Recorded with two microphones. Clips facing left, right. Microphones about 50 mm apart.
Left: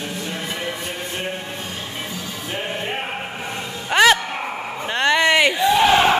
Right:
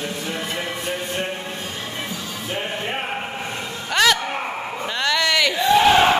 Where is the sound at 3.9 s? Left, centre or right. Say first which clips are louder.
Left 3 dB; centre.